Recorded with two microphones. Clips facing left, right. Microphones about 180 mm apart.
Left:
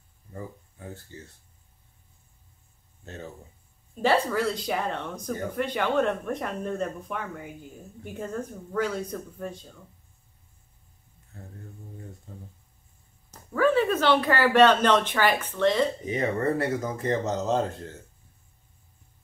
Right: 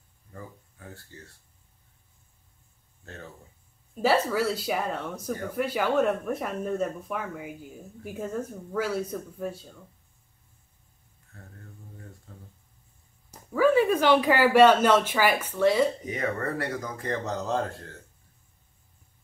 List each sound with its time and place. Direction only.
0.3 s speech: 20° left (ahead or behind)
3.9 s speech: 5° right (ahead or behind)
13.3 s speech: 10° right (ahead or behind)
16.1 s speech: 25° left (ahead or behind)